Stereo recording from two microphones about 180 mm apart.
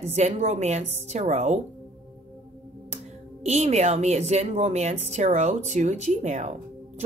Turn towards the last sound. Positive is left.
turn(degrees=-40)  # may be behind; listen again after turning